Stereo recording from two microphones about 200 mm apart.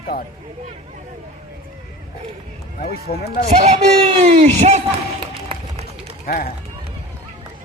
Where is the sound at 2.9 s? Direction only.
50° left (ahead or behind).